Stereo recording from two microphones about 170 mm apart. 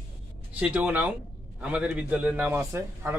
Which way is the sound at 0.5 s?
5° right (ahead or behind).